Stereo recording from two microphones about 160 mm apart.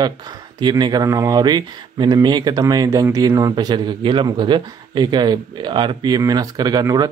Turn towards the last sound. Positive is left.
turn(degrees=-25)  # may be behind; listen again after turning